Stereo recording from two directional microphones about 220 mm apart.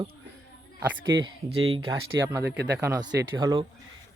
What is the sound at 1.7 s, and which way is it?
Speech, 15° right (ahead or behind).